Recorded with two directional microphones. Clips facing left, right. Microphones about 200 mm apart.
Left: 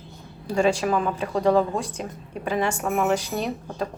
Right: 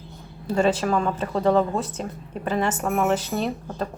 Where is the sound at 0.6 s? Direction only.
10° left (ahead or behind).